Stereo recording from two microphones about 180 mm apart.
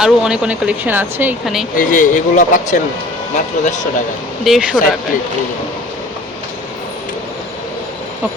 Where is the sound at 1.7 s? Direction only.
50° left (ahead or behind).